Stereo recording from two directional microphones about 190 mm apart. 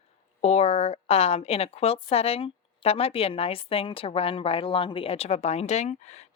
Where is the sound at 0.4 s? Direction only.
35° left (ahead or behind).